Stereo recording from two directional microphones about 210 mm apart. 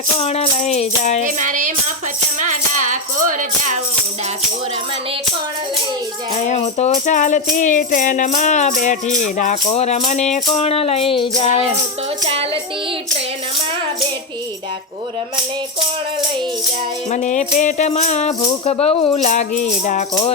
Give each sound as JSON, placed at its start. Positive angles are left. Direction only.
{"t": 0.2, "sound": "speech", "side_deg": 30}
{"t": 1.4, "sound": "music", "side_deg": -35}
{"t": 6.3, "sound": "speech", "side_deg": 35}
{"t": 9.7, "sound": "music", "side_deg": 30}
{"t": 12.2, "sound": "child singing", "side_deg": -25}
{"t": 17.1, "sound": "speech", "side_deg": 35}